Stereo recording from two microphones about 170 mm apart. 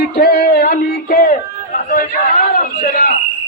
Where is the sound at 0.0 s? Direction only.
70° left (ahead or behind).